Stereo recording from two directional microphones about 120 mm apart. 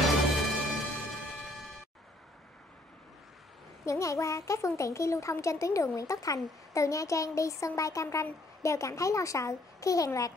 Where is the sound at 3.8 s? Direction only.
25° left (ahead or behind).